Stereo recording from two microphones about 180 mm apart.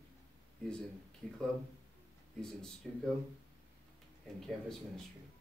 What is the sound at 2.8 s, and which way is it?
Speech, centre (ahead or behind).